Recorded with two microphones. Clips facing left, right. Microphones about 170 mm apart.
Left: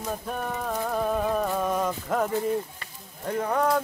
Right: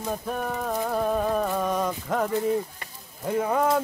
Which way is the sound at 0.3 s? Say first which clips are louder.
Right 2 dB; centre (ahead or behind).